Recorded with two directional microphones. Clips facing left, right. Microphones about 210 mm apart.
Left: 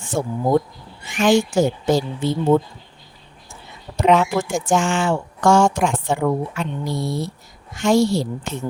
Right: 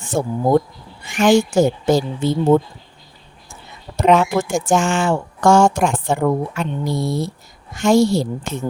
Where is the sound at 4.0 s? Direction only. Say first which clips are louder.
Right 2 dB; 45° right (ahead or behind).